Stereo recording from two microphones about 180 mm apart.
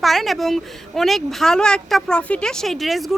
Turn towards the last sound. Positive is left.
turn(degrees=0)  # may be behind; listen again after turning